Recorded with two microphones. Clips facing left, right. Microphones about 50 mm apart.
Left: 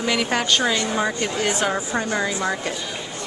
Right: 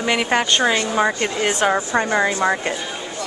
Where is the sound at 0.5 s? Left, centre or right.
Right.